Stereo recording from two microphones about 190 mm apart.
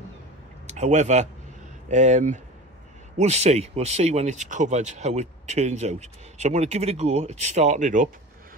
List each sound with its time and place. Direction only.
0.7 s a man's voice: 40° right (ahead or behind)